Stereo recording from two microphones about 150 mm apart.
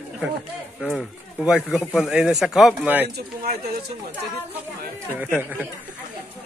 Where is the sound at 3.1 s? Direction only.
90° right.